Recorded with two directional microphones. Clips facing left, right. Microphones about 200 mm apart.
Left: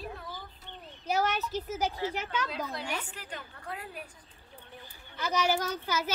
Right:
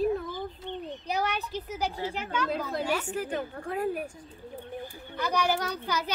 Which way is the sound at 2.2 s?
50° right (ahead or behind).